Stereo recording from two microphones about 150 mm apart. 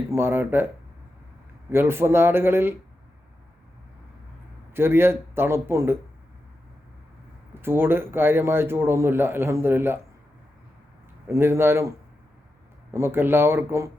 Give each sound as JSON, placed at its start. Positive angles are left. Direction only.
{"t": 0.1, "sound": "speech", "side_deg": -15}
{"t": 1.7, "sound": "speech", "side_deg": -15}
{"t": 4.7, "sound": "speech", "side_deg": -15}
{"t": 7.6, "sound": "speech", "side_deg": -15}
{"t": 11.3, "sound": "speech", "side_deg": -15}
{"t": 12.9, "sound": "speech", "side_deg": -15}